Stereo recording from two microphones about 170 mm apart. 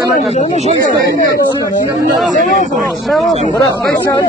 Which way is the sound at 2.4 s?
50° left (ahead or behind).